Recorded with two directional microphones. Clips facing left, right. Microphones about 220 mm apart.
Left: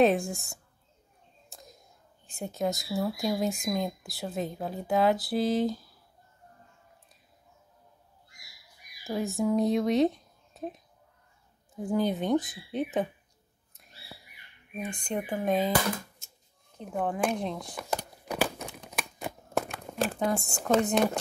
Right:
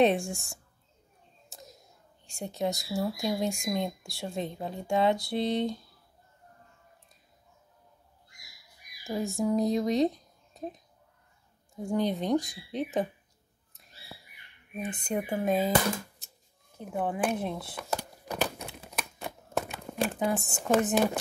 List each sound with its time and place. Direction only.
0.0 s speech: centre (ahead or behind)
1.5 s a sound: centre (ahead or behind)
2.2 s speech: centre (ahead or behind)
9.0 s speech: centre (ahead or behind)
14.8 s speech: 5° right (ahead or behind)
16.7 s speech: 5° right (ahead or behind)
18.3 s crumpling: 5° left (ahead or behind)
19.1 s a sound: centre (ahead or behind)
20.3 s speech: 20° right (ahead or behind)
20.9 s speech: 5° right (ahead or behind)